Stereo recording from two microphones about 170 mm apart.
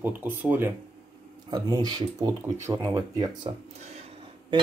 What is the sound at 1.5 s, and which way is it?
Speech, 25° right (ahead or behind).